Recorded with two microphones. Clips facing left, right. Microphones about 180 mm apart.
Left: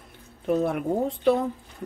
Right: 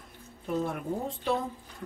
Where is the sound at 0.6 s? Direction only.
70° left (ahead or behind).